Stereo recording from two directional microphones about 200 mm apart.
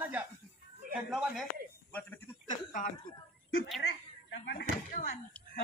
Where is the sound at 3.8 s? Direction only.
60° left (ahead or behind).